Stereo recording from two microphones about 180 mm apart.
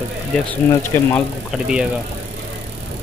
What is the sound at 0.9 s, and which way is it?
Speech, 15° left (ahead or behind).